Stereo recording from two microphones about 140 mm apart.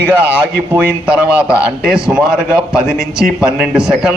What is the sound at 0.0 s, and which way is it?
A man's voice, 10° right (ahead or behind).